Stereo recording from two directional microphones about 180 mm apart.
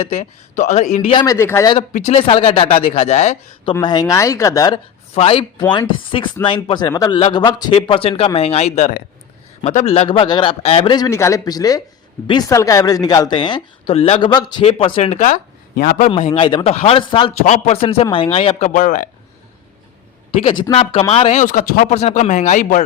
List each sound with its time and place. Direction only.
0.0 s speech: 35° left (ahead or behind)
1.1 s speech: 20° left (ahead or behind)
1.9 s speech: 35° left (ahead or behind)
3.7 s speech: 25° left (ahead or behind)
5.1 s speech: 30° left (ahead or behind); by 16.0 s 50° left (ahead or behind)
16.0 s speech: 30° left (ahead or behind)
18.7 s speech: 45° left (ahead or behind)
20.4 s speech: 30° left (ahead or behind)
21.4 s speech: 50° left (ahead or behind)
21.9 s speech: 35° left (ahead or behind)